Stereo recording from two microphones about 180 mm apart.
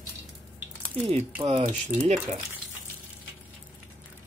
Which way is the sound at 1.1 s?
35° right (ahead or behind).